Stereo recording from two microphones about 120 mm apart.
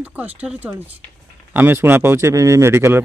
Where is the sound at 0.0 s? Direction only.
10° right (ahead or behind).